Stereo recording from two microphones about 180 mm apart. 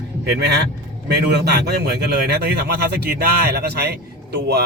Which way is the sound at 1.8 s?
65° right (ahead or behind).